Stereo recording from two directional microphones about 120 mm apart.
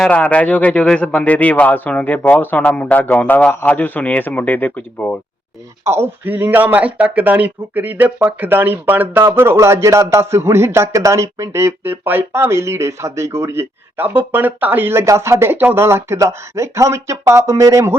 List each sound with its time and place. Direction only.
0.0 s a man's voice: 10° left (ahead or behind)
5.8 s speech: 20° right (ahead or behind)